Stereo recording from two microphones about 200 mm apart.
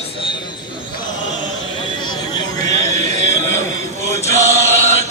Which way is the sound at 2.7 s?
35° right (ahead or behind).